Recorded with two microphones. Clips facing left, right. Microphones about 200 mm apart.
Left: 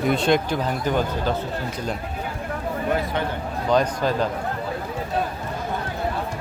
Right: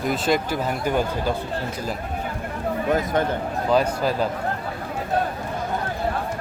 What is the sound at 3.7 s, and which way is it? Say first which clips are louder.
Speech: even; 10° right (ahead or behind).